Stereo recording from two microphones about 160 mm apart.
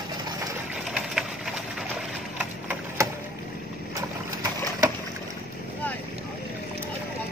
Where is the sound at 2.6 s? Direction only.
20° right (ahead or behind).